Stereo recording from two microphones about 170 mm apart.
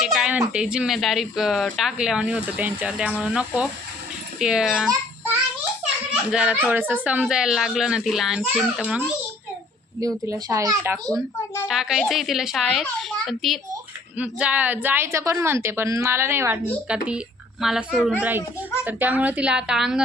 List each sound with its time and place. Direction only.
0.0 s a sound: 5° right (ahead or behind)
0.5 s speech: 5° right (ahead or behind)
6.3 s speech: 5° right (ahead or behind)
10.0 s speech: 20° right (ahead or behind)
11.7 s a woman's voice: centre (ahead or behind)